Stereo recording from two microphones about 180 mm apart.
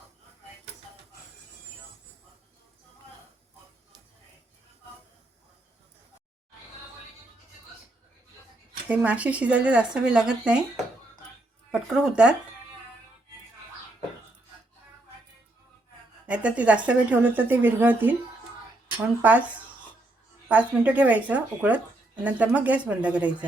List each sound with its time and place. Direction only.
8.9 s speech: 10° right (ahead or behind)
11.7 s speech: 5° right (ahead or behind)
16.2 s speech: 5° right (ahead or behind)
19.2 s speech: 10° right (ahead or behind)